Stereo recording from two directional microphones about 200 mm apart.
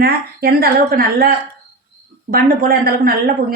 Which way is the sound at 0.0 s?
50° right (ahead or behind).